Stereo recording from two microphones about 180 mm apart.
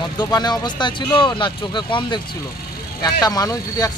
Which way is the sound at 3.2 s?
20° left (ahead or behind).